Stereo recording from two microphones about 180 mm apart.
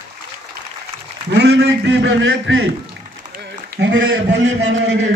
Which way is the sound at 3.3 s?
65° right (ahead or behind).